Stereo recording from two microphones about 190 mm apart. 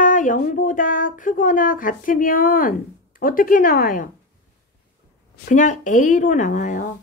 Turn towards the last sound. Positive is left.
turn(degrees=40)  # may be behind; listen again after turning